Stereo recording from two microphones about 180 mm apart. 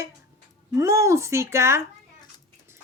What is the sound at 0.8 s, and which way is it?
Speech, 15° right (ahead or behind).